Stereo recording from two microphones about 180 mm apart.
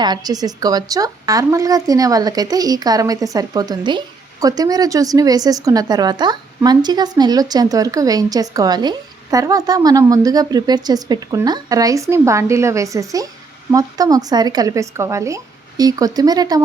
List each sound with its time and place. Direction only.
0.0 s a woman's voice: 20° right (ahead or behind)